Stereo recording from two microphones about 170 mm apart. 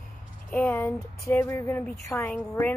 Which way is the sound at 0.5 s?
10° left (ahead or behind).